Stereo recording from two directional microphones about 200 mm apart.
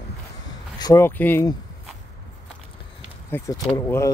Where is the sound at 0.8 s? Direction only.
15° left (ahead or behind).